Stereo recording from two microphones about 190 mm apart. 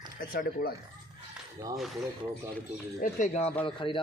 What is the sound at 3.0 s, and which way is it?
Speech, 40° left (ahead or behind).